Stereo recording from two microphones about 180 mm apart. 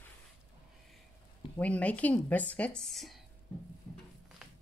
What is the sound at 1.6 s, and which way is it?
Speech, 10° left (ahead or behind).